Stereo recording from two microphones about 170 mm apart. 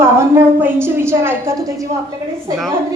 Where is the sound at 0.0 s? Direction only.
15° right (ahead or behind).